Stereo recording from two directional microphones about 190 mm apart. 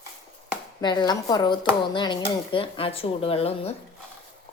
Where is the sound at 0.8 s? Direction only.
25° left (ahead or behind).